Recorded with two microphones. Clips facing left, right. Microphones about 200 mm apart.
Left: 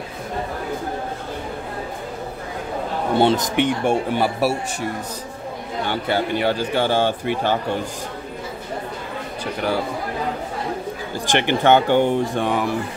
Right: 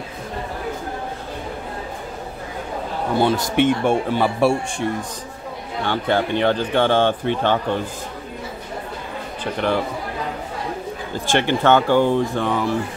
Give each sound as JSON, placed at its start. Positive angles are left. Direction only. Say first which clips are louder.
{"t": 3.2, "sound": "speech", "louder": "even", "side_deg": 20}
{"t": 5.9, "sound": "speech", "louder": "right 2 dB", "side_deg": 5}
{"t": 9.4, "sound": "speech", "louder": "right 2 dB", "side_deg": 10}
{"t": 11.1, "sound": "speech", "louder": "right 1 dB", "side_deg": 15}